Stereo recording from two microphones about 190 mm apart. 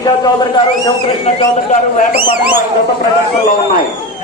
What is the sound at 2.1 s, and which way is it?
Speech, 55° right (ahead or behind).